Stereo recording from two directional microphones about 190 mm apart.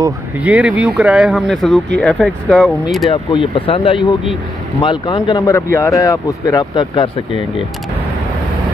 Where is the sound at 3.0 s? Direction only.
25° left (ahead or behind).